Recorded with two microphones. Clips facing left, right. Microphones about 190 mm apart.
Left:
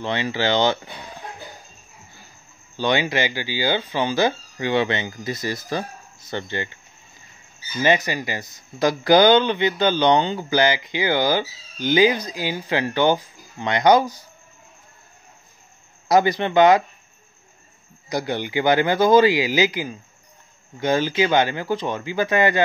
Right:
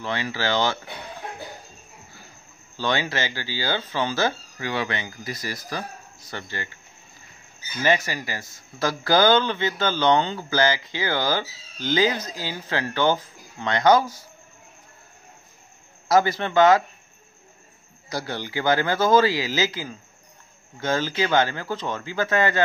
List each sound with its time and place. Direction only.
0.0 s speech: 20° left (ahead or behind)
2.8 s speech: 15° left (ahead or behind)
7.8 s speech: 20° left (ahead or behind)
16.1 s speech: 15° left (ahead or behind)
18.1 s speech: 15° left (ahead or behind)